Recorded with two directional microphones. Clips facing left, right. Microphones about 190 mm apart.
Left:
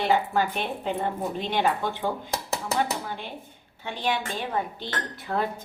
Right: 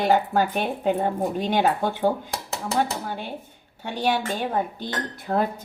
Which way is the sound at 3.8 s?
40° right (ahead or behind).